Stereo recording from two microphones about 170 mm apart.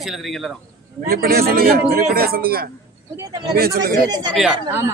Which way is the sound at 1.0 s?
60° right (ahead or behind).